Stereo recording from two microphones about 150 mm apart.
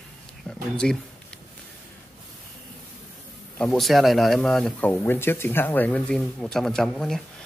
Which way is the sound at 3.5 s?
Centre (ahead or behind).